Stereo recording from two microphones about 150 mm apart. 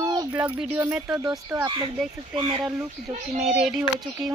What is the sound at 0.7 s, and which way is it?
Speech, 10° right (ahead or behind).